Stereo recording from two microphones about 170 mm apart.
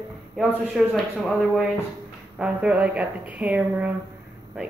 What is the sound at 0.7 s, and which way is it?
A man's voice, centre (ahead or behind).